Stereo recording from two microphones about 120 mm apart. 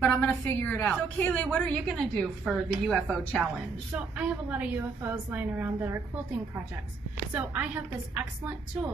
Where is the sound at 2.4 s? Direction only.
10° right (ahead or behind).